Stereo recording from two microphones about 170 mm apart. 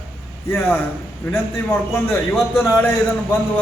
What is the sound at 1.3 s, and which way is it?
Speech, 15° left (ahead or behind).